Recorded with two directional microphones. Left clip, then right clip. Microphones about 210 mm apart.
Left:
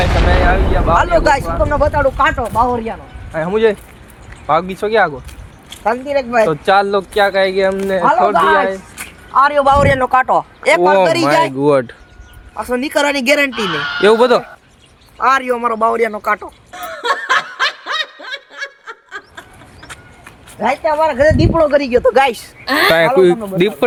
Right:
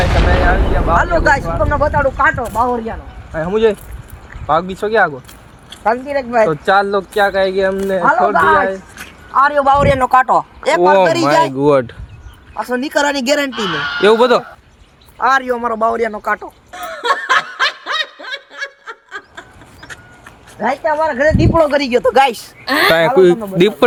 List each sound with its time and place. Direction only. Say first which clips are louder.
0.0 s a sound: even; centre (ahead or behind)
0.9 s speech: left 1 dB; centre (ahead or behind)
2.6 s speech: left 1 dB; 10° right (ahead or behind)
3.3 s speech: even; 20° right (ahead or behind)
5.8 s speech: even; 15° left (ahead or behind)
6.5 s speech: left 1 dB; 15° right (ahead or behind)
8.3 s speech: even; 10° left (ahead or behind)
8.6 s speech: even; 10° right (ahead or behind); by 16.5 s 15° left (ahead or behind)
16.7 s snicker: right 1 dB; centre (ahead or behind)
20.8 s speech: left 1 dB; centre (ahead or behind)
21.2 s speech: left 2 dB; 25° left (ahead or behind)
21.6 s speech: left 1 dB; 45° right (ahead or behind)
21.8 s speech: even; 25° right (ahead or behind)
22.6 s speech: even; centre (ahead or behind)